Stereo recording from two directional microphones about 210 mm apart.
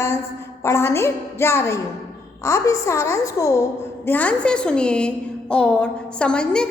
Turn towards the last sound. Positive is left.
turn(degrees=5)  # may be behind; listen again after turning